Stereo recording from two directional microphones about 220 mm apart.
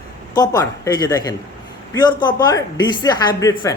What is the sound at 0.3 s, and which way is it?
A woman's voice, 15° left (ahead or behind).